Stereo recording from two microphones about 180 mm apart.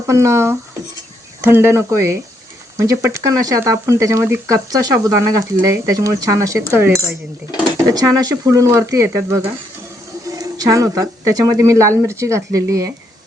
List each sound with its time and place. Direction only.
0.1 s speech: 15° right (ahead or behind)
7.9 s speech: 20° right (ahead or behind)